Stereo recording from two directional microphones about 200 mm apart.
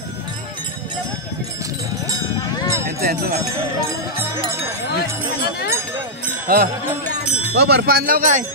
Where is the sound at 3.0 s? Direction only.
50° right (ahead or behind).